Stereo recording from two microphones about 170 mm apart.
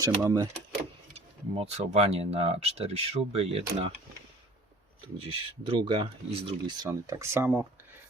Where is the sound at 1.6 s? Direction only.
40° right (ahead or behind).